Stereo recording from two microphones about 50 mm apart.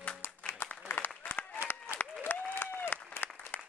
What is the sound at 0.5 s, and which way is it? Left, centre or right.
Applause, left.